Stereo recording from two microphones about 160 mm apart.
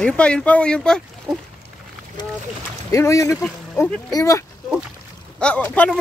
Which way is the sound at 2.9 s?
20° left (ahead or behind).